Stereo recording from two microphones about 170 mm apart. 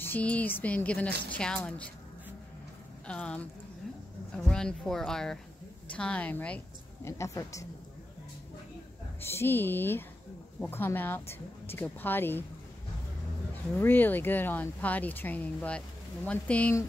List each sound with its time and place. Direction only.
0.0 s speech: 10° left (ahead or behind)
3.1 s speech: 5° left (ahead or behind)
4.5 s speech: 5° left (ahead or behind)
9.2 s speech: 15° left (ahead or behind)
13.7 s speech: 10° left (ahead or behind)